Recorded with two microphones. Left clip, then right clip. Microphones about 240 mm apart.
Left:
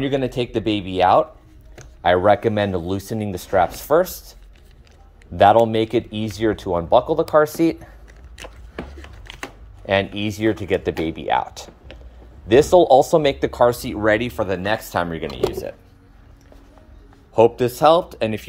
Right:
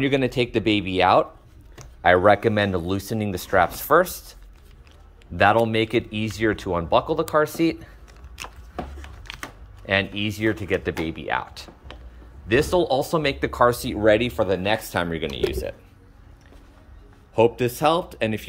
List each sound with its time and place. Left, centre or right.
0.0 s speech: centre
9.8 s speech: centre
12.7 s speech: right
13.0 s speech: centre
17.3 s speech: centre